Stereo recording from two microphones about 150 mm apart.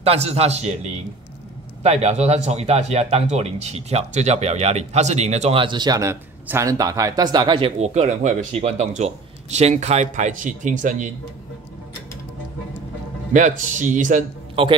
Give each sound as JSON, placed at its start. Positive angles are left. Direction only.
{"t": 0.0, "sound": "speech", "side_deg": -45}
{"t": 1.8, "sound": "speech", "side_deg": -45}
{"t": 13.3, "sound": "speech", "side_deg": -55}
{"t": 14.5, "sound": "a man's voice", "side_deg": -35}